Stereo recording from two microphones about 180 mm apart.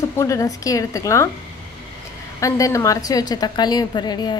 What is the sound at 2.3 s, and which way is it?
A woman's voice, 20° left (ahead or behind).